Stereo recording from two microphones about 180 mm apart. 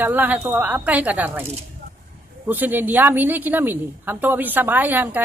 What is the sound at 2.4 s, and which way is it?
Speech, 10° right (ahead or behind).